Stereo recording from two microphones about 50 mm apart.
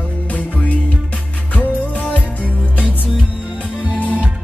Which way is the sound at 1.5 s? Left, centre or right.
Left.